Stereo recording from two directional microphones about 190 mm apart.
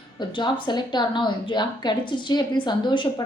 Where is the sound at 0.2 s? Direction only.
25° left (ahead or behind).